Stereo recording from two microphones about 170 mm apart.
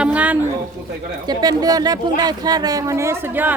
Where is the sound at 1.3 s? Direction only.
25° right (ahead or behind).